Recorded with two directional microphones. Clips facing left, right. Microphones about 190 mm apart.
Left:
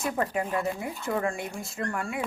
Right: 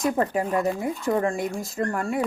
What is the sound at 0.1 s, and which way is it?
Speech, 35° right (ahead or behind).